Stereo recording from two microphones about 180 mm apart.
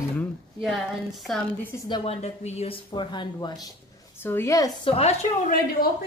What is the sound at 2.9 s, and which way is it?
Speech, 25° left (ahead or behind).